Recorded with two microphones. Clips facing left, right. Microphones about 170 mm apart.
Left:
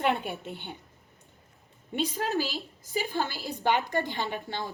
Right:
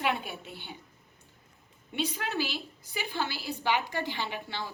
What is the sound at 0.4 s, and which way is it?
Speech, 55° left (ahead or behind).